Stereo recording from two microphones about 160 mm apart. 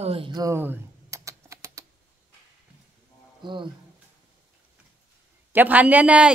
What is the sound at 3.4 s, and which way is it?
Speech, 30° right (ahead or behind).